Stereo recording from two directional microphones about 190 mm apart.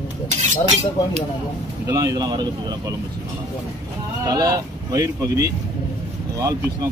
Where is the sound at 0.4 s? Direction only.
35° right (ahead or behind).